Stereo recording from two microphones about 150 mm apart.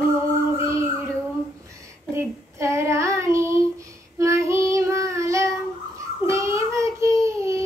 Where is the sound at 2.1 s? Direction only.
20° right (ahead or behind).